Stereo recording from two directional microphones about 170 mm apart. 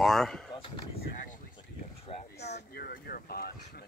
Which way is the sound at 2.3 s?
75° left (ahead or behind).